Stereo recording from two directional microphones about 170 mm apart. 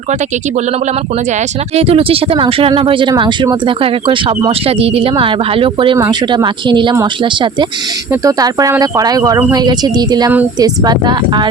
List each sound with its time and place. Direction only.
1.7 s speech: 35° right (ahead or behind)